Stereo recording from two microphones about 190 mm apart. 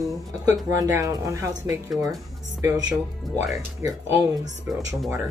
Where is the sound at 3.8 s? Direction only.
20° right (ahead or behind).